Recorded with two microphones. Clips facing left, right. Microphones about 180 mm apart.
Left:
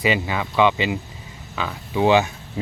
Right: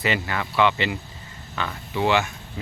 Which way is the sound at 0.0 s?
15° left (ahead or behind).